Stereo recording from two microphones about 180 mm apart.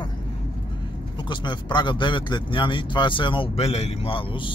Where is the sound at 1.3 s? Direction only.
25° left (ahead or behind).